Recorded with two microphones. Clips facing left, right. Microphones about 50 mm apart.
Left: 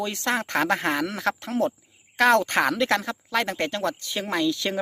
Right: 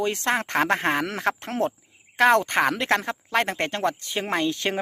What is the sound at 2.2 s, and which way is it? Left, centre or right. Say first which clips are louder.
A woman's voice: right 1 dB; right.